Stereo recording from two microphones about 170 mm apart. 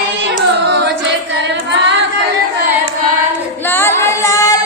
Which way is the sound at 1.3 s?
90° right.